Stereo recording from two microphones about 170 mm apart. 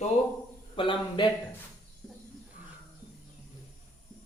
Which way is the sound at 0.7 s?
30° left (ahead or behind).